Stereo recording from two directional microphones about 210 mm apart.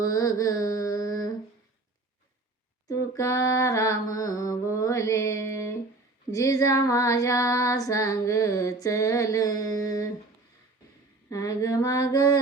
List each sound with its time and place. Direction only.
0.0 s mantra: 15° left (ahead or behind)
2.9 s female singing: 15° left (ahead or behind)
11.3 s female singing: 15° left (ahead or behind)